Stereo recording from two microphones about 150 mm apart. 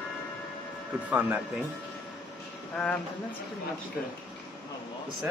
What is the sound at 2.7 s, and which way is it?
Speech, 5° left (ahead or behind).